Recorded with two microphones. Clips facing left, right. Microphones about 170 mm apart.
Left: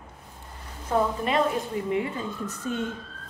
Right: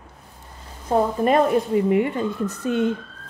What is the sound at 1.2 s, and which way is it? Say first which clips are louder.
Speech: right 7 dB; 50° right (ahead or behind).